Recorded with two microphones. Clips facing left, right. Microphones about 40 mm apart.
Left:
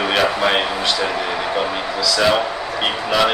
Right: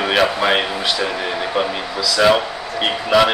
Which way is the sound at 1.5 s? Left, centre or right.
Centre.